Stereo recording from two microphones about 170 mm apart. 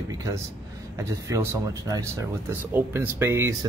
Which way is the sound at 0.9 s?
15° right (ahead or behind).